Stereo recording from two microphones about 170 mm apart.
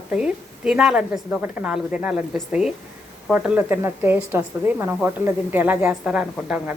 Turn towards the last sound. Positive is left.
turn(degrees=-5)  # may be behind; listen again after turning